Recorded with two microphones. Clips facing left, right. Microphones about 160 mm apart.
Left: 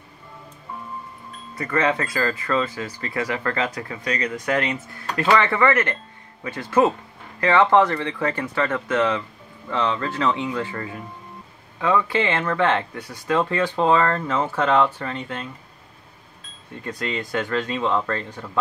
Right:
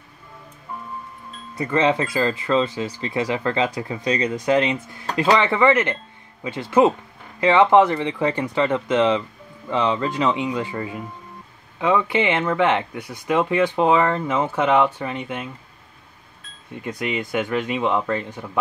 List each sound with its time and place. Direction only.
1.6 s speech: 20° right (ahead or behind)
16.7 s speech: 15° right (ahead or behind)